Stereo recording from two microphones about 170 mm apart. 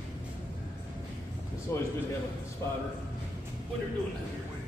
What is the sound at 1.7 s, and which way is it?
Speech, 15° left (ahead or behind).